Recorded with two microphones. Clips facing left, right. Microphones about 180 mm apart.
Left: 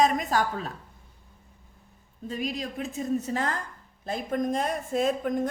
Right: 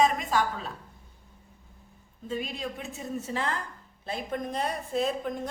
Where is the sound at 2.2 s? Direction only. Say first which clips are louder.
Left 2 dB; 40° left (ahead or behind).